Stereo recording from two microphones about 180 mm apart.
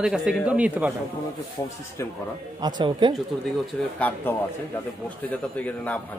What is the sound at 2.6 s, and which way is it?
Speech, 25° right (ahead or behind).